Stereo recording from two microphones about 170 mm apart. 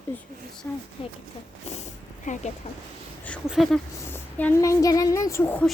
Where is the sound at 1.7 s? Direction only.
40° left (ahead or behind).